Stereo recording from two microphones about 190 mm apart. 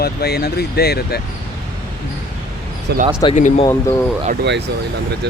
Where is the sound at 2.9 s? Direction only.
60° right (ahead or behind).